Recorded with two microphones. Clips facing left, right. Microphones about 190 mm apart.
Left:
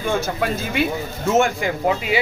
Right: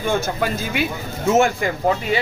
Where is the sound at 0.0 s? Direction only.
Centre (ahead or behind).